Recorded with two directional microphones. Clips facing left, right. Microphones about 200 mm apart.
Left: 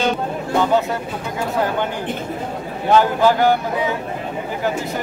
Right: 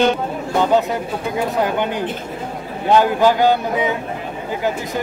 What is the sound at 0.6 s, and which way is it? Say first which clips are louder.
Speech: right 2 dB; 15° right (ahead or behind).